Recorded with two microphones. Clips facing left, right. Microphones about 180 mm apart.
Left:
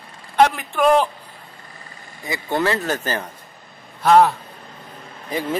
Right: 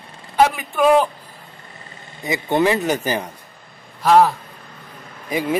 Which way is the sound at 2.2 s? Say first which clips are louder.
Right 4 dB; 20° right (ahead or behind).